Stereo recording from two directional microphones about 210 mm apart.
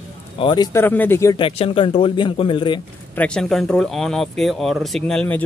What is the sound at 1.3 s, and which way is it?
Speech, 25° left (ahead or behind).